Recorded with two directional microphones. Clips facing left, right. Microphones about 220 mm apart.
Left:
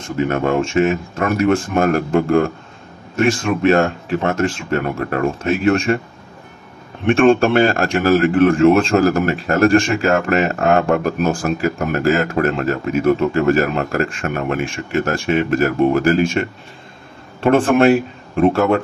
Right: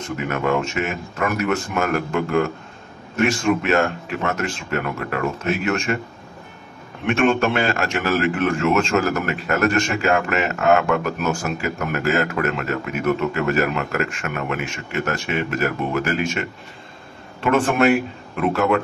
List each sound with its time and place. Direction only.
0.3 s speech: 30° left (ahead or behind)
3.3 s speech: 35° left (ahead or behind)
7.1 s speech: 30° left (ahead or behind)
17.7 s speech: 30° left (ahead or behind)